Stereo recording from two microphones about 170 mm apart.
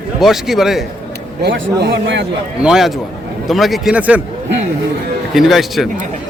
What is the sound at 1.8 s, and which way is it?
Speech, 90° right.